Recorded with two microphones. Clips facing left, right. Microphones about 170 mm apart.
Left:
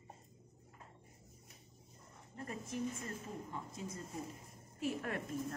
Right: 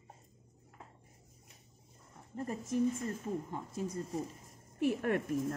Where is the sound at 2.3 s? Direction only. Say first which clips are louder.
Right 8 dB; 40° right (ahead or behind).